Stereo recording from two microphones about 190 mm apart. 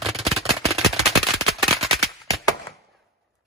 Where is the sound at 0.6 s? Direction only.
30° right (ahead or behind).